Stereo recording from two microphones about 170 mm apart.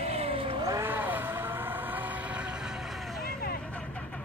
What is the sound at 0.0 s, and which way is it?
Vehicle, 35° right (ahead or behind).